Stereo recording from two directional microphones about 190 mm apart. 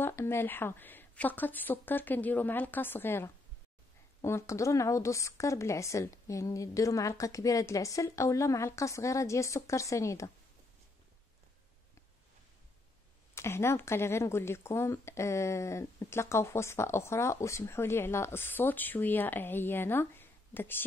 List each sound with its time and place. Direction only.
0.0 s speech: 15° left (ahead or behind)
13.3 s speech: 15° left (ahead or behind)